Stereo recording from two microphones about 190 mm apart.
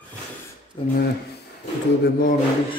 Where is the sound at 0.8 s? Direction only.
30° left (ahead or behind).